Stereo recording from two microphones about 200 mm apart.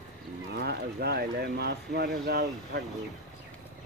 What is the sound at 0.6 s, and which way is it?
Speech, 50° right (ahead or behind).